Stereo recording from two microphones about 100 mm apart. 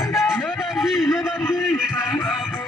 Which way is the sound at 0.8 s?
Centre (ahead or behind).